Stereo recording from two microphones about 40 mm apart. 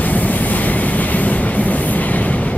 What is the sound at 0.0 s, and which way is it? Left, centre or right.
Train, left.